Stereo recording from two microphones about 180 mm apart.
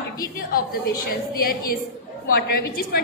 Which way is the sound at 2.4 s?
60° left (ahead or behind).